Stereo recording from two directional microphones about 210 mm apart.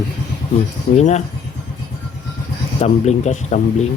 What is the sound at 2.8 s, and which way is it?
Speech, 35° left (ahead or behind).